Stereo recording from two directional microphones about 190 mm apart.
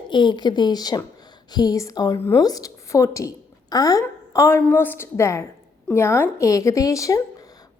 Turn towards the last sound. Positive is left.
turn(degrees=15)  # may be behind; listen again after turning